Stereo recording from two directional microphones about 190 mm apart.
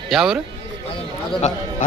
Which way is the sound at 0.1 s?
Centre (ahead or behind).